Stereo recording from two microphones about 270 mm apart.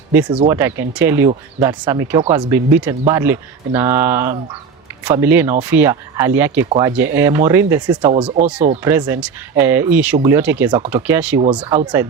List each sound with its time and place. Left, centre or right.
0.3 s speech: centre
8.8 s speech: centre
11.3 s speech: right